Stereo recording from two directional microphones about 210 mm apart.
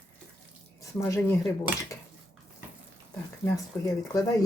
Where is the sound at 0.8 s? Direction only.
15° left (ahead or behind).